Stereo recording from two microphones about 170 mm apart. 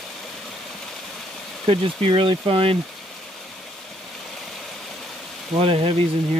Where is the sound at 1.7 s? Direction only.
35° right (ahead or behind).